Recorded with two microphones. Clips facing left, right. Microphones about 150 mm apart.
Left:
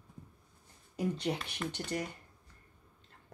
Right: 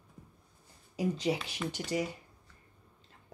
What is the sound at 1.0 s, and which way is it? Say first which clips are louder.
Speech: right 3 dB; 5° right (ahead or behind).